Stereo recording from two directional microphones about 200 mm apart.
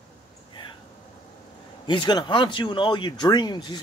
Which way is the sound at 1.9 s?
20° left (ahead or behind).